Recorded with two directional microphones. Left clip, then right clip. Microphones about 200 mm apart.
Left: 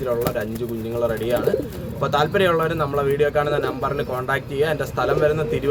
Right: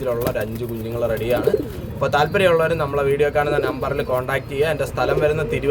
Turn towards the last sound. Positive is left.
turn(degrees=-5)  # may be behind; listen again after turning